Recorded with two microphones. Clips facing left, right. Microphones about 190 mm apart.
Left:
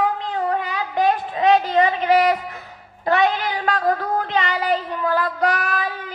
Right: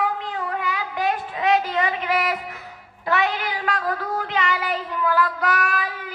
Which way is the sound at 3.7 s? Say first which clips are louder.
Left 5 dB; 35° left (ahead or behind).